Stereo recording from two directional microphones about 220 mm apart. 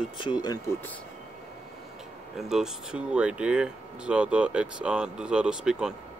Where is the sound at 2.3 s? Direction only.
Centre (ahead or behind).